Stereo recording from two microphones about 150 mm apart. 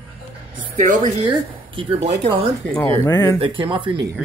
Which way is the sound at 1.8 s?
35° right (ahead or behind).